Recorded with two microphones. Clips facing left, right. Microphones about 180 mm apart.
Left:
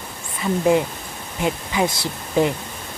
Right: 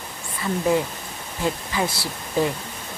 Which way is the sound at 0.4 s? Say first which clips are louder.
Left 4 dB; 20° left (ahead or behind).